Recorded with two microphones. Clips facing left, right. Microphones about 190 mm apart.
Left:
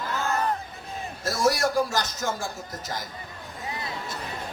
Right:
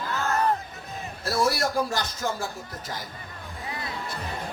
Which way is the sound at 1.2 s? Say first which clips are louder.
Left 1 dB; 45° left (ahead or behind).